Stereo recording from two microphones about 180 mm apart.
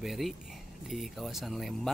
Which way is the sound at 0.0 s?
Centre (ahead or behind).